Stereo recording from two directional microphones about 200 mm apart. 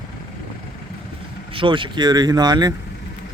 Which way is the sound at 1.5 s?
25° right (ahead or behind).